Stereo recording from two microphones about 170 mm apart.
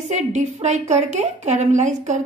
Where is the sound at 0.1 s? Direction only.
40° right (ahead or behind).